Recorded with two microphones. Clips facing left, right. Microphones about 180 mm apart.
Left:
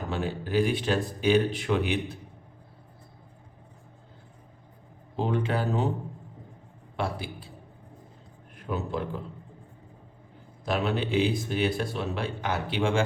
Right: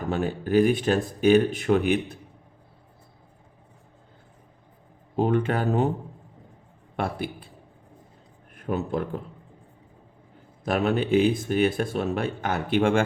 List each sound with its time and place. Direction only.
0.1 s speech: 50° right (ahead or behind)
5.1 s speech: 55° right (ahead or behind)
6.9 s speech: 55° right (ahead or behind)
8.5 s speech: 50° right (ahead or behind)
10.7 s speech: 50° right (ahead or behind)